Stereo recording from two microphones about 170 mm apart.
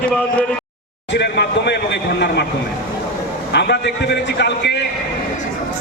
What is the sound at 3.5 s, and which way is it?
Speech, 85° left.